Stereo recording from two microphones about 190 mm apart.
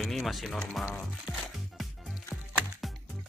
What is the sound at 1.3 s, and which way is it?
Music, centre (ahead or behind).